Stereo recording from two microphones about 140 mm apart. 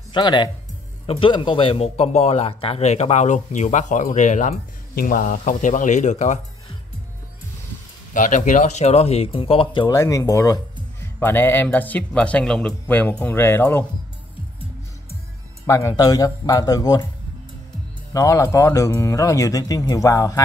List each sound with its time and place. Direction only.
0.1 s speech: 35° left (ahead or behind); by 6.4 s 55° left (ahead or behind)
8.1 s speech: 65° left (ahead or behind); by 9.9 s 35° left (ahead or behind)
9.9 s speech: 25° left (ahead or behind)
15.6 s speech: 20° left (ahead or behind)
18.1 s speech: 25° left (ahead or behind)